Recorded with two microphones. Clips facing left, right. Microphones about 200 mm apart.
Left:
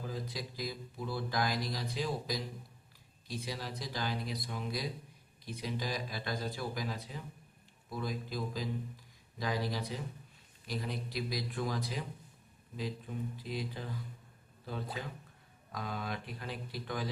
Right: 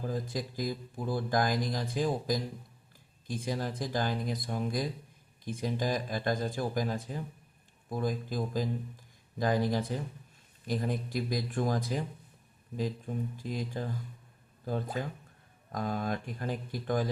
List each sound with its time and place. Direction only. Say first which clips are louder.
0.1 s speech: right 6 dB; 50° right (ahead or behind)